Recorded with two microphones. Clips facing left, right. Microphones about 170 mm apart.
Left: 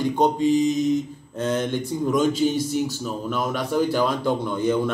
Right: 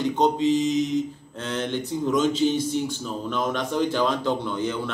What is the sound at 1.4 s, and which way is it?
Speech, 10° left (ahead or behind).